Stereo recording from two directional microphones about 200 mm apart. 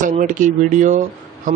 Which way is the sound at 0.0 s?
40° right (ahead or behind).